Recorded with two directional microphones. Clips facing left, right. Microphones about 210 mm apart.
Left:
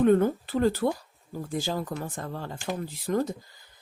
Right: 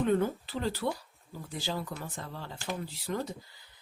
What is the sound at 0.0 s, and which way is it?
Speech, 50° left (ahead or behind).